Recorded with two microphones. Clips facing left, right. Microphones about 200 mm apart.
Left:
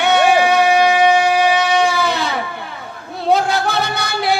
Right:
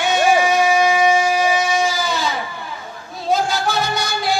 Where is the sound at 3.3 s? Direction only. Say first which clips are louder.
Left 3 dB; 60° left (ahead or behind).